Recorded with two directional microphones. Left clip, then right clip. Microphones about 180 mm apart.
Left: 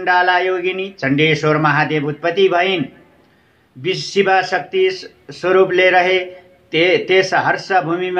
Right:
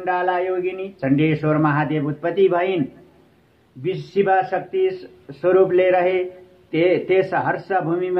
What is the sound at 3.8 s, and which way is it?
A man's voice, 25° left (ahead or behind).